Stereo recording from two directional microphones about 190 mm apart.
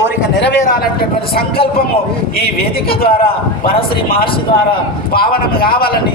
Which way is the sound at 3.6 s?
50° left (ahead or behind).